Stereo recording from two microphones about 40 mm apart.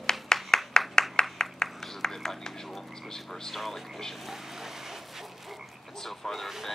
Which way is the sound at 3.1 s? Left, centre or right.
Centre.